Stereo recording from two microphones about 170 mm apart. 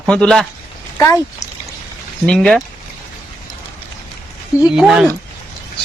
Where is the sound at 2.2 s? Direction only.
5° left (ahead or behind).